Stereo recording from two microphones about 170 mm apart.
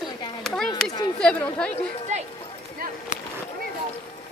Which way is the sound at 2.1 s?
40° right (ahead or behind).